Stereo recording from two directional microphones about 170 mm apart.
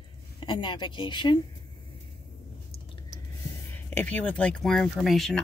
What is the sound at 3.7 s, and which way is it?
Speech, 10° left (ahead or behind).